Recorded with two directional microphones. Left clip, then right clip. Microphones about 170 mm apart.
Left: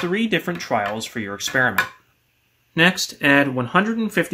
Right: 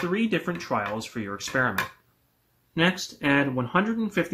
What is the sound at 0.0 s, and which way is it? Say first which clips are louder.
Speech: left 5 dB; 10° left (ahead or behind).